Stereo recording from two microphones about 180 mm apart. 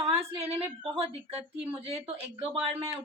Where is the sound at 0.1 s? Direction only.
35° right (ahead or behind).